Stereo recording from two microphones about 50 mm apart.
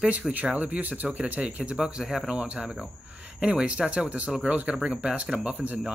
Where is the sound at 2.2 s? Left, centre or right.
Right.